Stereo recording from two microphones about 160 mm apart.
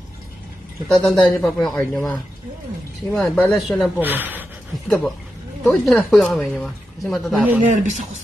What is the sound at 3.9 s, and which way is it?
Speech, 10° right (ahead or behind).